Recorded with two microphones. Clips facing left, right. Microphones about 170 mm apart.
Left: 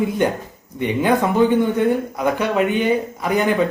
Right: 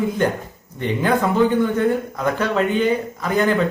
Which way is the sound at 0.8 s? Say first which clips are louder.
Left 2 dB; 15° left (ahead or behind).